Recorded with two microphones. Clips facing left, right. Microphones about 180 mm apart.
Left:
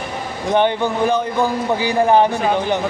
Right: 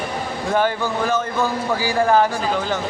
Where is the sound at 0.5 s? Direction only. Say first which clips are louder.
Left 4 dB; 20° left (ahead or behind).